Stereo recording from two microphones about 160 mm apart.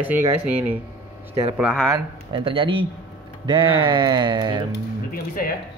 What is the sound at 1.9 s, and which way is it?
Speech, 30° right (ahead or behind).